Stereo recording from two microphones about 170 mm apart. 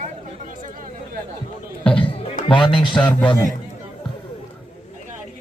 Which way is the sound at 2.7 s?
30° left (ahead or behind).